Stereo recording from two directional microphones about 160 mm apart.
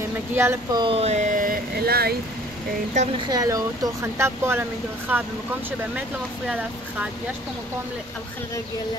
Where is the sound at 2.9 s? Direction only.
50° right (ahead or behind).